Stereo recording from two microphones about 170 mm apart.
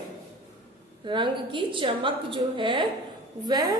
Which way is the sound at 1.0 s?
30° right (ahead or behind).